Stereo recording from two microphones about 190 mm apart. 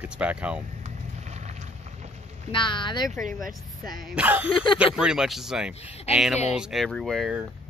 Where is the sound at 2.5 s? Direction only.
25° left (ahead or behind).